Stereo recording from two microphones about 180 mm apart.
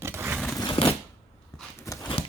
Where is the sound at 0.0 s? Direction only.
15° right (ahead or behind).